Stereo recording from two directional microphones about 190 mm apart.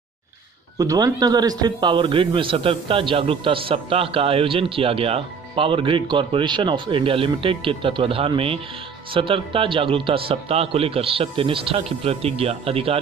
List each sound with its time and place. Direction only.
0.7 s a man's voice: 20° right (ahead or behind)